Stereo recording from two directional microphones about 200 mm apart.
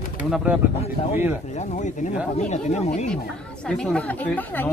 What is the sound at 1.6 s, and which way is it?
Speech, 35° left (ahead or behind).